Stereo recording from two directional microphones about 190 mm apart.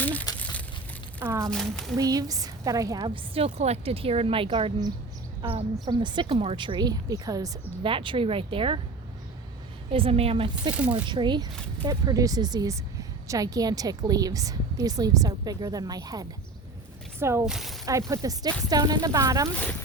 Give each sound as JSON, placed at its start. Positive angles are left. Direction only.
{"t": 0.0, "sound": "crumpling", "side_deg": 10}
{"t": 1.2, "sound": "speech", "side_deg": -15}
{"t": 1.5, "sound": "speech", "side_deg": 5}
{"t": 2.0, "sound": "a woman's voice", "side_deg": -20}
{"t": 3.3, "sound": "a woman's voice", "side_deg": -30}
{"t": 9.9, "sound": "a woman's voice", "side_deg": -30}
{"t": 10.8, "sound": "speech", "side_deg": -5}
{"t": 11.1, "sound": "a woman's voice", "side_deg": -25}
{"t": 17.5, "sound": "speech", "side_deg": 0}
{"t": 17.8, "sound": "a woman's voice", "side_deg": -15}